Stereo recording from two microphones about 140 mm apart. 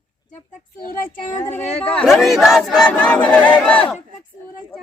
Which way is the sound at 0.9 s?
80° left.